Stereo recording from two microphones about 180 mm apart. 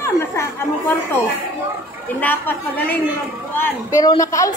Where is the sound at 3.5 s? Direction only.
15° left (ahead or behind).